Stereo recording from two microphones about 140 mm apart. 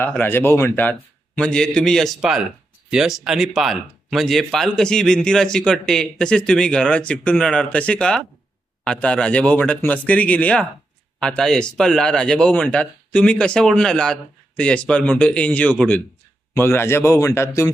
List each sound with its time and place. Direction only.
0.0 s a man's voice: 15° left (ahead or behind)